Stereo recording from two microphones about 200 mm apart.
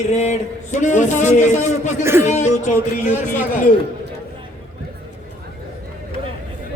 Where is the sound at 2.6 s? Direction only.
40° left (ahead or behind).